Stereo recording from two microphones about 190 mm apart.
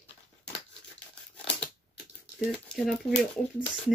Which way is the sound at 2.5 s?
Centre (ahead or behind).